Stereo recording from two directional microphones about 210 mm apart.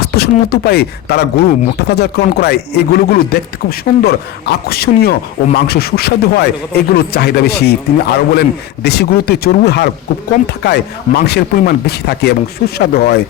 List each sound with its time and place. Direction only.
0.0 s speech: 50° left (ahead or behind)